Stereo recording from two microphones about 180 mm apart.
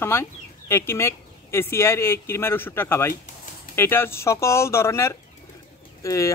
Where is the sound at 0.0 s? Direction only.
15° left (ahead or behind).